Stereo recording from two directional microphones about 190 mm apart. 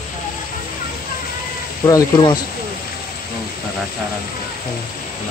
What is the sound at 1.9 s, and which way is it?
Speech, 20° left (ahead or behind).